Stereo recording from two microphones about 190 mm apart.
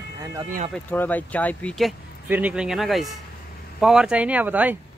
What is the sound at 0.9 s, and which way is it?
Speech, 10° left (ahead or behind).